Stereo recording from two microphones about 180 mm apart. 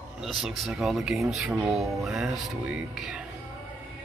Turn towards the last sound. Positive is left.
turn(degrees=0)  # may be behind; listen again after turning